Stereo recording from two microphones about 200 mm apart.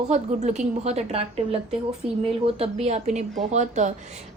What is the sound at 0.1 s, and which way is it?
A woman's voice, 35° right (ahead or behind).